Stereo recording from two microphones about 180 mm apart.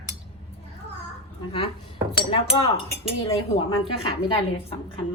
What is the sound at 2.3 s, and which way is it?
Speech, 25° left (ahead or behind).